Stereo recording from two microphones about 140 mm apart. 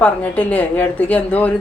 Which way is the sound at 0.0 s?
10° left (ahead or behind).